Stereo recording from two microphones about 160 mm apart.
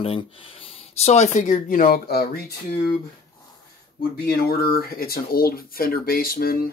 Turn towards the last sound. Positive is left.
turn(degrees=70)  # may be behind; listen again after turning